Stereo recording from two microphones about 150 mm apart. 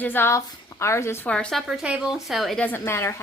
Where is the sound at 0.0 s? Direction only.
15° left (ahead or behind).